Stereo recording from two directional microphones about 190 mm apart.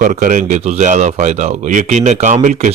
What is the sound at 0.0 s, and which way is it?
Speech, 45° right (ahead or behind).